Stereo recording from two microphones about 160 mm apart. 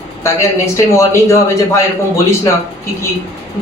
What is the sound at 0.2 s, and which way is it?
A man's voice, 15° left (ahead or behind).